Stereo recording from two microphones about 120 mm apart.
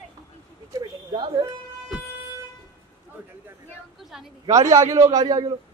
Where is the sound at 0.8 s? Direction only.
40° right (ahead or behind).